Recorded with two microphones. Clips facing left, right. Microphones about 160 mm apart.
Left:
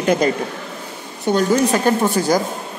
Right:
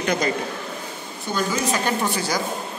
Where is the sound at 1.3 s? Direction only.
65° left (ahead or behind).